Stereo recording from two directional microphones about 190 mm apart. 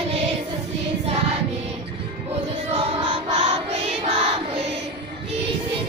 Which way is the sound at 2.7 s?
35° right (ahead or behind).